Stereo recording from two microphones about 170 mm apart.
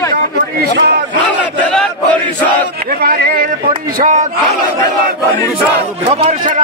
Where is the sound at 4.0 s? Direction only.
45° right (ahead or behind).